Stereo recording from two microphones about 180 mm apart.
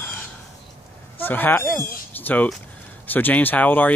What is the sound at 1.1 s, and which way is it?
Speech, 10° left (ahead or behind).